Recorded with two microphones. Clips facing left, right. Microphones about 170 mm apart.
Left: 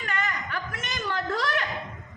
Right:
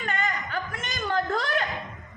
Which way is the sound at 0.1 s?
70° left (ahead or behind).